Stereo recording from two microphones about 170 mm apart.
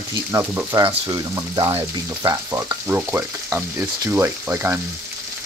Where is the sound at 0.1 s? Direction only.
15° right (ahead or behind).